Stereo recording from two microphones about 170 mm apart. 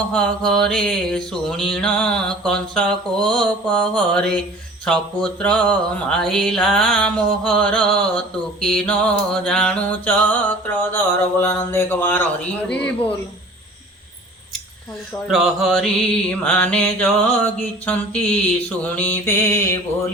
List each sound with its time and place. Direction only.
0.4 s a sound: 5° left (ahead or behind)
8.6 s music: 5° left (ahead or behind)
15.3 s music: centre (ahead or behind); by 19.7 s 15° left (ahead or behind)